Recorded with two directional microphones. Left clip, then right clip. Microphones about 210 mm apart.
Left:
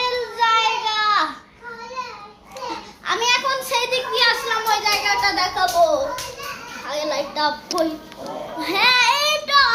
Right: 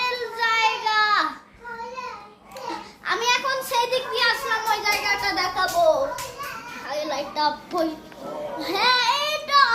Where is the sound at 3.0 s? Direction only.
10° left (ahead or behind).